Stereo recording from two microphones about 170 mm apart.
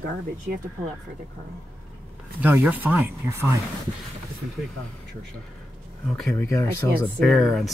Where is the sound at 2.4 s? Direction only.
10° right (ahead or behind).